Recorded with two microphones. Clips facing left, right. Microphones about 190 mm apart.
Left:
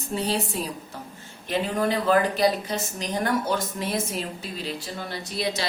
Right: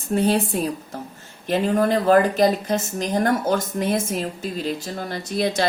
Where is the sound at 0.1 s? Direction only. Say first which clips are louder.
Right 7 dB; 55° right (ahead or behind).